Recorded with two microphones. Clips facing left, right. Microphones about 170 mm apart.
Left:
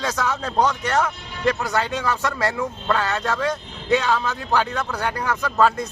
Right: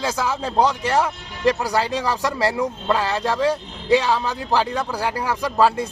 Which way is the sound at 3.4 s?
30° right (ahead or behind).